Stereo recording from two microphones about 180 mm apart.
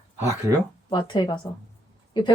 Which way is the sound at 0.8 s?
25° left (ahead or behind).